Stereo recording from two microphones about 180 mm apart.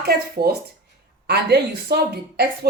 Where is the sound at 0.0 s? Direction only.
60° right (ahead or behind).